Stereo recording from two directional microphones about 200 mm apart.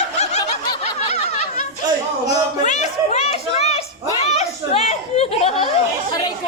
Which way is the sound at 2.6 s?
35° left (ahead or behind).